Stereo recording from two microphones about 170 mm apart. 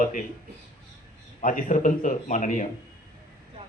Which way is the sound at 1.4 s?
50° left (ahead or behind).